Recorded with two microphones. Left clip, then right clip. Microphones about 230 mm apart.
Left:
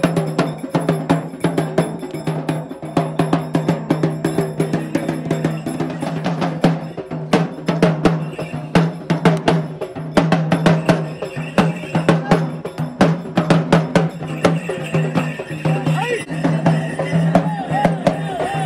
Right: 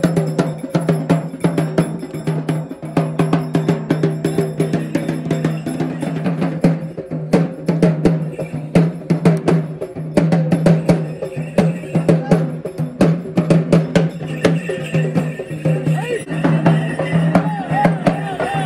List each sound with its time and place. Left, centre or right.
0.0 s music: left
0.8 s music: left
3.5 s music: centre
7.6 s music: centre
11.5 s cowbell: centre
13.0 s music: centre
16.4 s music: left